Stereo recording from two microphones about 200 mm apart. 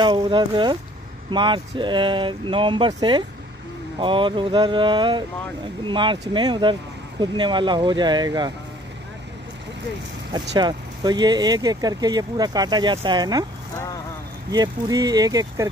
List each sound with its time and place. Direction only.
0.0 s speech: 20° right (ahead or behind)
10.5 s speech: 20° right (ahead or behind)
14.5 s speech: 20° right (ahead or behind)